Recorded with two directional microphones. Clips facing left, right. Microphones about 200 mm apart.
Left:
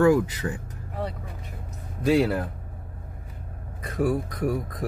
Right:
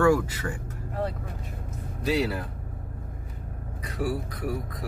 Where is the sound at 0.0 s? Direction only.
20° left (ahead or behind).